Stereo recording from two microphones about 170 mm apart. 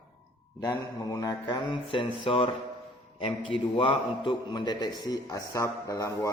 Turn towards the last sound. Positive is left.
turn(degrees=20)  # may be behind; listen again after turning